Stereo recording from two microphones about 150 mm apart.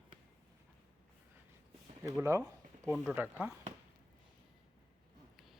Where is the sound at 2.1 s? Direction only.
20° right (ahead or behind).